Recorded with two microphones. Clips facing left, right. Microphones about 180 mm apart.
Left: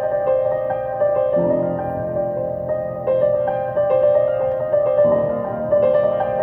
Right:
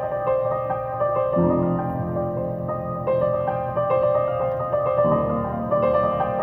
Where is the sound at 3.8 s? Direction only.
35° left (ahead or behind).